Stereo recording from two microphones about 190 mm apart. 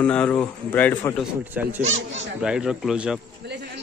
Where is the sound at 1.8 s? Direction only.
35° right (ahead or behind).